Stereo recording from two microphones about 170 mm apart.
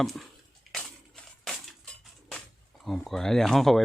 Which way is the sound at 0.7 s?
Centre (ahead or behind).